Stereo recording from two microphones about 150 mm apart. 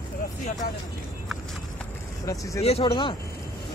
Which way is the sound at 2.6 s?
40° left (ahead or behind).